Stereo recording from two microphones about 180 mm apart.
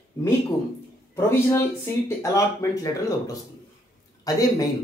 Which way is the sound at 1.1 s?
15° left (ahead or behind).